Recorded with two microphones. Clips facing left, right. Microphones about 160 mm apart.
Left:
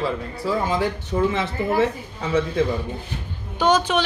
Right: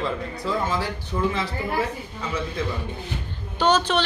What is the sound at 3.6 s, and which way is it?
Speech, 10° left (ahead or behind).